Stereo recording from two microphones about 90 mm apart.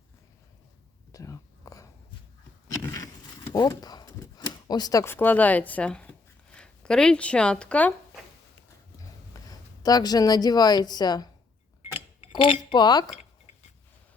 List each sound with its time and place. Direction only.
1.1 s whispering: 35° left (ahead or behind)
2.6 s a sound: 40° left (ahead or behind)
5.0 s speech: 25° left (ahead or behind)
9.5 s speech: 45° left (ahead or behind)
12.3 s speech: 65° left (ahead or behind)